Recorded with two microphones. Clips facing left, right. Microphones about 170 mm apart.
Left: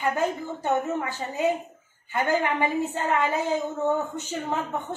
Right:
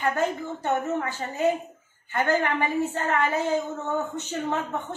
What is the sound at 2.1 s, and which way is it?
A woman's voice, 15° left (ahead or behind).